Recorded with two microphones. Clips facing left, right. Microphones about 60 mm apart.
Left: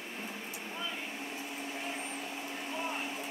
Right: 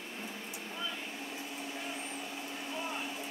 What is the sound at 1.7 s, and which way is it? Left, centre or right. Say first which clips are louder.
Vacuum cleaner: left 2 dB; left.